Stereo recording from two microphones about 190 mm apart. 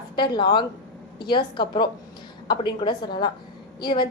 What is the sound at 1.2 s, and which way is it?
A woman's voice, 25° left (ahead or behind).